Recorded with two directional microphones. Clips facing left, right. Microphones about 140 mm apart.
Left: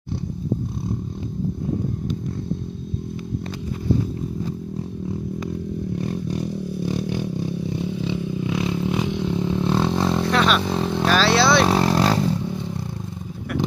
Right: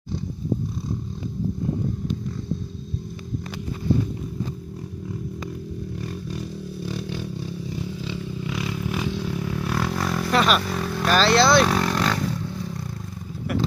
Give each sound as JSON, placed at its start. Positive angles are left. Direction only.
{"t": 5.9, "sound": "vehicle", "side_deg": 20}
{"t": 10.3, "sound": "vehicle", "side_deg": 0}
{"t": 10.6, "sound": "vehicle", "side_deg": 25}
{"t": 11.1, "sound": "speech", "side_deg": 0}
{"t": 11.6, "sound": "vehicle", "side_deg": 25}